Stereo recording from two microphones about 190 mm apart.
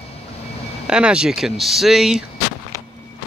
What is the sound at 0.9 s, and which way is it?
Speech, 5° right (ahead or behind).